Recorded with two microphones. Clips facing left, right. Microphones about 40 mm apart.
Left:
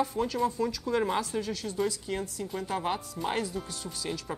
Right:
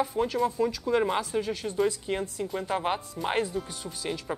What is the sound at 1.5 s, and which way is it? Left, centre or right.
Speech, right.